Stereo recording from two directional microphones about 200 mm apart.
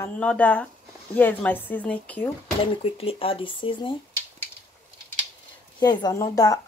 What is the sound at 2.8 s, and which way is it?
Speech, 30° left (ahead or behind).